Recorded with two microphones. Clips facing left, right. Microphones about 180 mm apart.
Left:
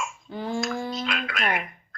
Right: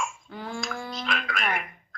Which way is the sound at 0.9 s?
Centre (ahead or behind).